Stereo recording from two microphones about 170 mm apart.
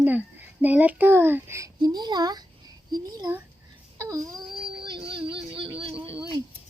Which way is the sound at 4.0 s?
20° right (ahead or behind).